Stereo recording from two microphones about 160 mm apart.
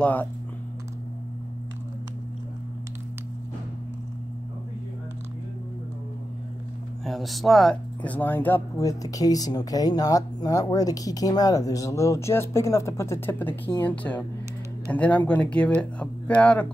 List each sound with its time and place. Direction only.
0.0 s speech: 10° left (ahead or behind)
7.1 s speech: centre (ahead or behind)